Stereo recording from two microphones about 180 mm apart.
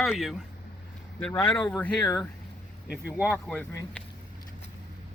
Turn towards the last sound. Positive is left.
turn(degrees=5)  # may be behind; listen again after turning